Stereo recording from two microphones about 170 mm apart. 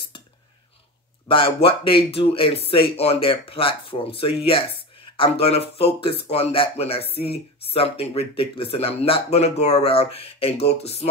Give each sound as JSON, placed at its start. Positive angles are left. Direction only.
{"t": 1.3, "sound": "speech", "side_deg": 30}